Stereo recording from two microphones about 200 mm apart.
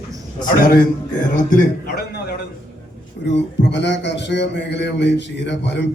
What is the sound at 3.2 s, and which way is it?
A man's voice, 60° left (ahead or behind).